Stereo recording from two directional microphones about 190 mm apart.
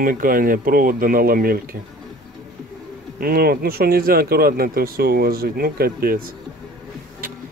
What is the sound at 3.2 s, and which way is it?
Speech, 50° right (ahead or behind).